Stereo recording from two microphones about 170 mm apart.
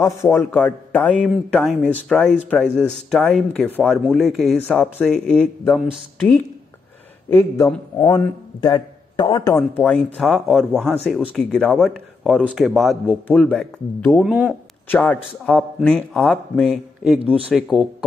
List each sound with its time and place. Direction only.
0.0 s a man's voice: 15° left (ahead or behind)
10.1 s a man's voice: centre (ahead or behind)
14.2 s a man's voice: 5° right (ahead or behind)
14.9 s a man's voice: 10° left (ahead or behind)